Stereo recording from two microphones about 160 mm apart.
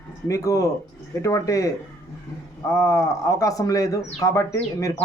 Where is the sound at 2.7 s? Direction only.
20° left (ahead or behind).